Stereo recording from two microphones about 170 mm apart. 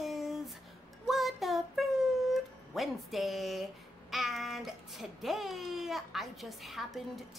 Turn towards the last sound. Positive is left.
turn(degrees=0)  # may be behind; listen again after turning